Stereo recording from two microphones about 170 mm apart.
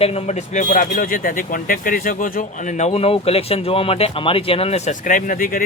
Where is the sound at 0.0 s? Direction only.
35° left (ahead or behind).